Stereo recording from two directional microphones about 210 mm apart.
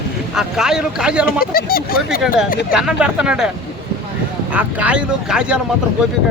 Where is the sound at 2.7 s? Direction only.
5° right (ahead or behind).